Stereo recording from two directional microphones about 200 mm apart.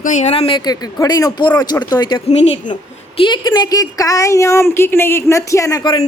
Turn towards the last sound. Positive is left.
turn(degrees=20)  # may be behind; listen again after turning